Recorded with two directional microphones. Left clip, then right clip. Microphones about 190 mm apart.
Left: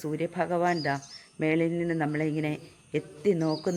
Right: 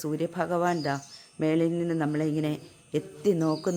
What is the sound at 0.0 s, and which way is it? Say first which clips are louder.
Speech: even; 15° right (ahead or behind).